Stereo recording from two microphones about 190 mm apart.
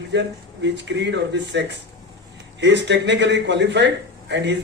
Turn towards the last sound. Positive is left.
turn(degrees=-65)  # may be behind; listen again after turning